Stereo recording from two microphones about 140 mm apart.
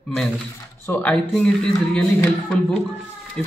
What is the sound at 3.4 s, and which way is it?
Speech, 5° left (ahead or behind).